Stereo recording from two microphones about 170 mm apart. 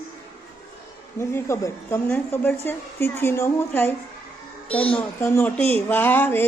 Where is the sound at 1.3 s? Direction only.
15° left (ahead or behind).